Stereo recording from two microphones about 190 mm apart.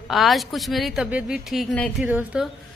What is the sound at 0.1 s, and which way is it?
A woman's voice, centre (ahead or behind).